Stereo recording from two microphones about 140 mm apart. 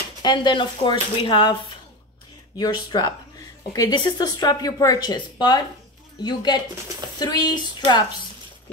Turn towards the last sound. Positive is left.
turn(degrees=30)  # may be behind; listen again after turning